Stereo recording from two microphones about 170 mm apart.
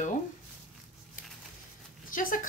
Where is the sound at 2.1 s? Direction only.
55° left (ahead or behind).